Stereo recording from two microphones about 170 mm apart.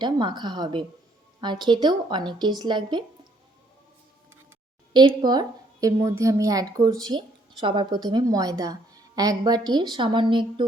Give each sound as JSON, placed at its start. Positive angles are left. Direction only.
{"t": 0.0, "sound": "a woman's voice", "side_deg": -25}
{"t": 4.9, "sound": "a woman's voice", "side_deg": -25}